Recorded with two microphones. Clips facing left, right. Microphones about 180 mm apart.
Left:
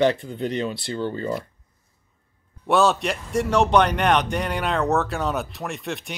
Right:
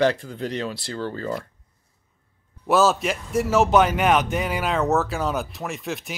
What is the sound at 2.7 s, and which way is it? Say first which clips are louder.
Speech: even; centre (ahead or behind).